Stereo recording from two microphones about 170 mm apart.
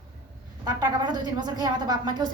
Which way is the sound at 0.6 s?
25° right (ahead or behind).